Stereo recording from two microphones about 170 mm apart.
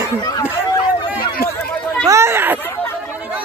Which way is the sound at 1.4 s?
15° right (ahead or behind).